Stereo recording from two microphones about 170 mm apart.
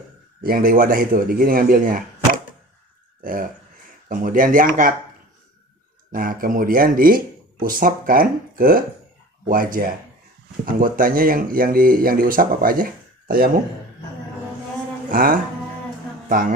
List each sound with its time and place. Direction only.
0.4 s speech: 60° right (ahead or behind)
3.2 s speech: 55° right (ahead or behind)
6.1 s speech: 55° right (ahead or behind)
15.1 s speech: 55° right (ahead or behind)